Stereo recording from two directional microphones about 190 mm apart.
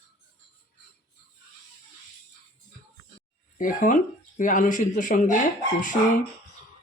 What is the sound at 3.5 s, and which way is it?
Speech, 45° left (ahead or behind).